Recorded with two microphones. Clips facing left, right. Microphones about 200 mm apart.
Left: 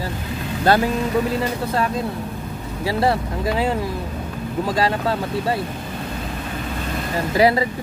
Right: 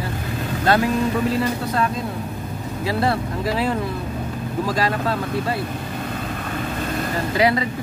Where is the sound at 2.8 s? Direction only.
25° left (ahead or behind).